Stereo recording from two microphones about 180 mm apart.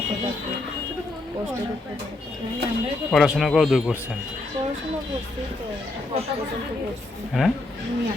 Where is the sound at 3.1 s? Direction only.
Centre (ahead or behind).